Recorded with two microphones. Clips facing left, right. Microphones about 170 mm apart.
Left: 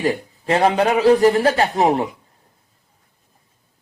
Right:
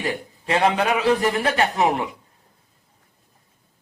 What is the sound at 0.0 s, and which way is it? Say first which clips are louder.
A man's voice: left 6 dB; 35° left (ahead or behind).